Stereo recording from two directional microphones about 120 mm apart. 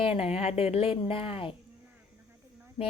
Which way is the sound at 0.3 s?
55° left (ahead or behind).